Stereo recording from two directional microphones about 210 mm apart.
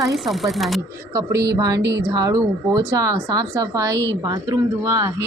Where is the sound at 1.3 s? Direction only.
50° right (ahead or behind).